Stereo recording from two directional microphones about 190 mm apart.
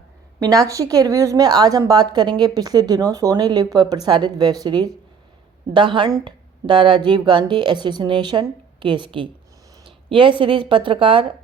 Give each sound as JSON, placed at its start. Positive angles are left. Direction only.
{"t": 0.3, "sound": "a woman's voice", "side_deg": -20}